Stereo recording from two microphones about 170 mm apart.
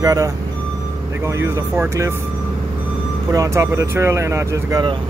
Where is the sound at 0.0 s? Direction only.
20° right (ahead or behind).